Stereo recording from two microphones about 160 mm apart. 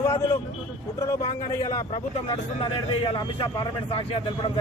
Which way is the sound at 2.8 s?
30° left (ahead or behind).